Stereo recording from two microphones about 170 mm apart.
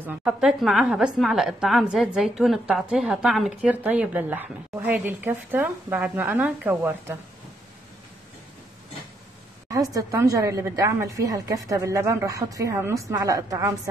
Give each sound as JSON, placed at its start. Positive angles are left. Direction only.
{"t": 0.0, "sound": "a woman's voice", "side_deg": -10}
{"t": 9.7, "sound": "a woman's voice", "side_deg": -20}